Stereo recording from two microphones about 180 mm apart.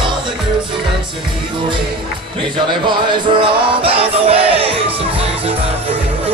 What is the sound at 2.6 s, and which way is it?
Music, 25° right (ahead or behind).